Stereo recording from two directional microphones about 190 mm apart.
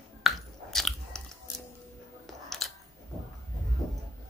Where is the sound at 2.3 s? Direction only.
Centre (ahead or behind).